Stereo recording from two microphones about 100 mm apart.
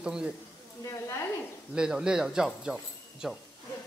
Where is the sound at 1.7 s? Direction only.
5° right (ahead or behind).